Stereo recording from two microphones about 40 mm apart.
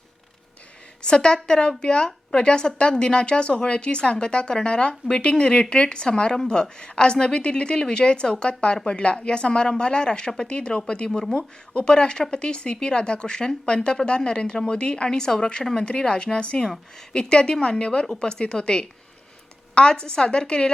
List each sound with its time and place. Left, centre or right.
1.0 s speech: centre